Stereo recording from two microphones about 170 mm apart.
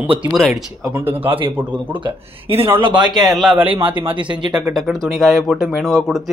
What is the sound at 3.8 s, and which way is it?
Speech, 30° right (ahead or behind).